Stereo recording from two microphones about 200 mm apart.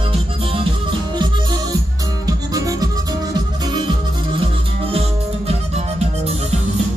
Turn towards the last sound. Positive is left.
turn(degrees=-30)  # may be behind; listen again after turning